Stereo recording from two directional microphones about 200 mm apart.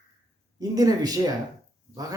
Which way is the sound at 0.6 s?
20° right (ahead or behind).